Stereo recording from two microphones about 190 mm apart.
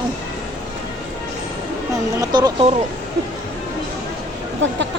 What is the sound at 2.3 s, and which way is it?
Speech, 20° right (ahead or behind).